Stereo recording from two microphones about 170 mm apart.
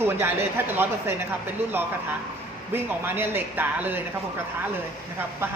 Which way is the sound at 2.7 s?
15° right (ahead or behind).